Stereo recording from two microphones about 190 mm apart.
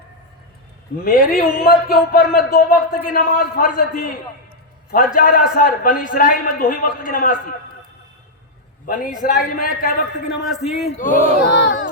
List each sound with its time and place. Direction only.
1.0 s speech: 50° left (ahead or behind)
9.1 s speech: 50° left (ahead or behind)
10.4 s a man's voice: centre (ahead or behind)
10.8 s speech: 40° left (ahead or behind)
11.4 s a sound: 65° left (ahead or behind)